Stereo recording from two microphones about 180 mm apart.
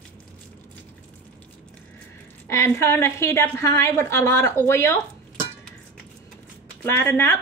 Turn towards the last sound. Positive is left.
turn(degrees=15)  # may be behind; listen again after turning